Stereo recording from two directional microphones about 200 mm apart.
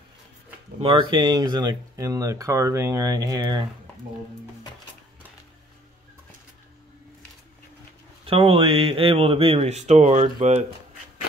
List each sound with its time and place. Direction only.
0.7 s speech: 25° right (ahead or behind)
8.3 s speech: 30° right (ahead or behind)